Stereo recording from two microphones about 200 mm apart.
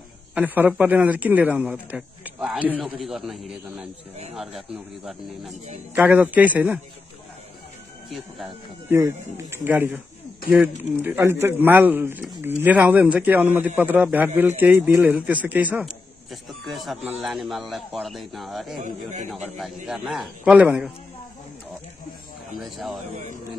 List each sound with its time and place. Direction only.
0.3 s a man's voice: 10° right (ahead or behind)
8.9 s a man's voice: 15° right (ahead or behind)
18.8 s a man's voice: 40° right (ahead or behind)
19.2 s a man's voice: centre (ahead or behind)
22.5 s a man's voice: centre (ahead or behind)